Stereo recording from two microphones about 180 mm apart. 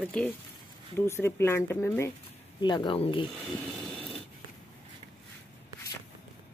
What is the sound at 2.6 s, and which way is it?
Speech, 25° left (ahead or behind).